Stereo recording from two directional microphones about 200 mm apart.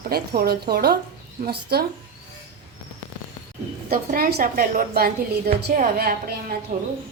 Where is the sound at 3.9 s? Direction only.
45° right (ahead or behind).